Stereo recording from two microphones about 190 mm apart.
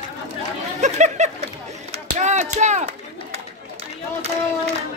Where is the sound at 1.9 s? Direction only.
35° right (ahead or behind).